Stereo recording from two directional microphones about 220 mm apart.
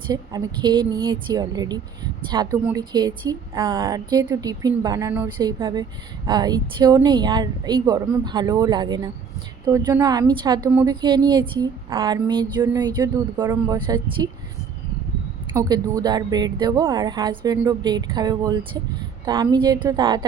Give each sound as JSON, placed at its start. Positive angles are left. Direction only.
{"t": 0.1, "sound": "a woman's voice", "side_deg": -15}
{"t": 15.5, "sound": "a woman's voice", "side_deg": -15}